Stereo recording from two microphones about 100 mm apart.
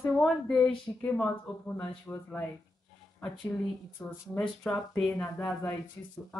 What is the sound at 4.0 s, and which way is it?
Speech, 20° left (ahead or behind).